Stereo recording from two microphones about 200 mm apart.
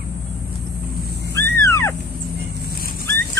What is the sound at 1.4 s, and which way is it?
Wild animals, 15° left (ahead or behind).